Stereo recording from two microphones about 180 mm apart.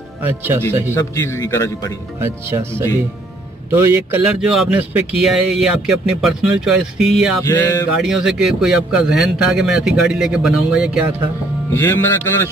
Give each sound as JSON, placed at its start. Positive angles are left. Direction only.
{"t": 0.2, "sound": "speech", "side_deg": -10}
{"t": 0.9, "sound": "a man's voice", "side_deg": 15}
{"t": 2.1, "sound": "speech", "side_deg": -15}
{"t": 7.4, "sound": "a man's voice", "side_deg": 15}
{"t": 8.0, "sound": "speech", "side_deg": -5}
{"t": 11.7, "sound": "a man's voice", "side_deg": 15}